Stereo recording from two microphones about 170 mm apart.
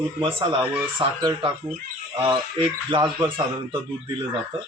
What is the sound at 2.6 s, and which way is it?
Speech, 30° right (ahead or behind).